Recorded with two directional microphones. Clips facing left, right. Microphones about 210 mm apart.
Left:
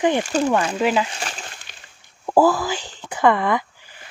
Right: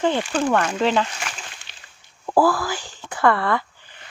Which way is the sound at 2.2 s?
15° left (ahead or behind).